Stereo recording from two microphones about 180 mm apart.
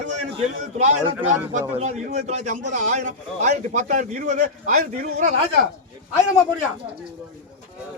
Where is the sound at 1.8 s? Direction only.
40° right (ahead or behind).